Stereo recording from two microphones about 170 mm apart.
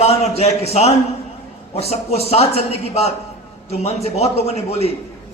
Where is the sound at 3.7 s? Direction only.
40° left (ahead or behind).